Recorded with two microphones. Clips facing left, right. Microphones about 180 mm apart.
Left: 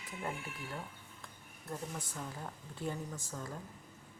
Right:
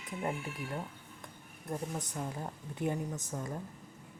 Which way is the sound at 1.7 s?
20° right (ahead or behind).